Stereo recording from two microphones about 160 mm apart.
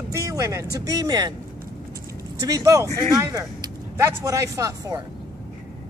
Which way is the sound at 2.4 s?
20° right (ahead or behind).